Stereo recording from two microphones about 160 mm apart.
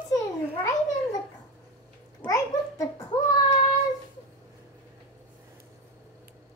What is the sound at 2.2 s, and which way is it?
Babbling, 20° left (ahead or behind).